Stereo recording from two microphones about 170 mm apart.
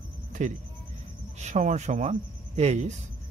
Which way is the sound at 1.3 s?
45° right (ahead or behind).